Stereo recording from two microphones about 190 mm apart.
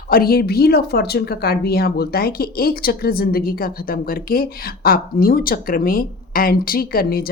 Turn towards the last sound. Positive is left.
turn(degrees=50)  # may be behind; listen again after turning